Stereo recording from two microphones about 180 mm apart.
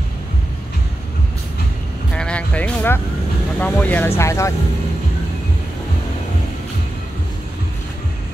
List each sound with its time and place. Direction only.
2.1 s music: 5° left (ahead or behind)
3.5 s speech: 10° left (ahead or behind)